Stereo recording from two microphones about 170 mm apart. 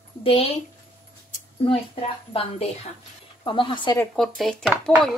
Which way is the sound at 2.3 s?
35° left (ahead or behind).